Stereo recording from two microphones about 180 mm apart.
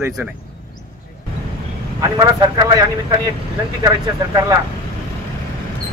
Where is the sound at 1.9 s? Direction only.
20° right (ahead or behind).